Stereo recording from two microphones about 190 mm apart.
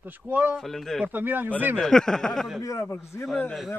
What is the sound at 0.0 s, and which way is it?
Speech, 10° right (ahead or behind).